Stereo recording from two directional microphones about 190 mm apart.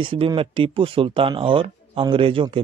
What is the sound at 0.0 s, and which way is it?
Speech, 25° right (ahead or behind).